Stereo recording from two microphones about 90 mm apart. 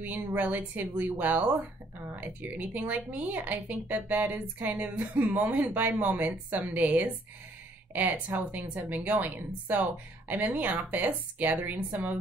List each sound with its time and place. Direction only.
0.0 s speech: 20° right (ahead or behind)